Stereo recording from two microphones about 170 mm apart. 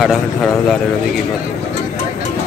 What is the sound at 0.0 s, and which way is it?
Speech, centre (ahead or behind).